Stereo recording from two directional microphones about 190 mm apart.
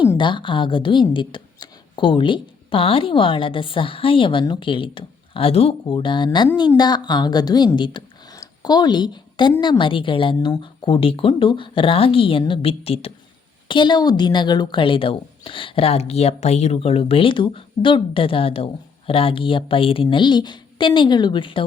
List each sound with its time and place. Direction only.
0.2 s a woman's voice: 25° left (ahead or behind)